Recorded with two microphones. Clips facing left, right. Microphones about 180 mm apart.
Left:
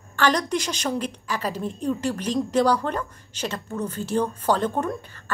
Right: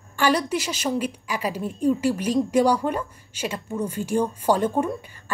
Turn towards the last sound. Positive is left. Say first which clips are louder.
# right 2 dB
turn(degrees=-10)  # may be behind; listen again after turning